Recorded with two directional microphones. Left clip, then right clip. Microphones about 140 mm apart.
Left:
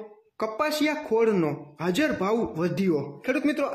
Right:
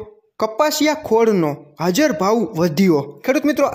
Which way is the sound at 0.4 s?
45° right (ahead or behind).